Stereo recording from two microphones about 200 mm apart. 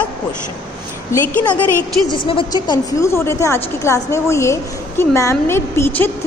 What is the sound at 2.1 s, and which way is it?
A woman's voice, 25° left (ahead or behind).